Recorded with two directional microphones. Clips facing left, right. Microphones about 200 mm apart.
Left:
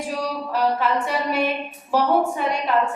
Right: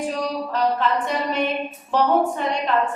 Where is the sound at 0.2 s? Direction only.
10° left (ahead or behind).